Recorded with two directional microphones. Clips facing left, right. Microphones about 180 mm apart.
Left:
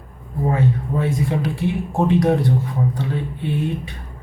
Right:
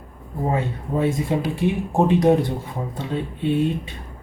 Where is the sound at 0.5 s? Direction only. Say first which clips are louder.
Left 3 dB; 25° right (ahead or behind).